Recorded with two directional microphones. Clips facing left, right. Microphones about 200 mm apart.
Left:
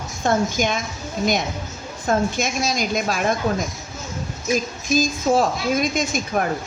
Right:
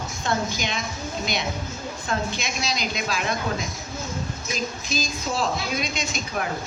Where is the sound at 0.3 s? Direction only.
50° left (ahead or behind).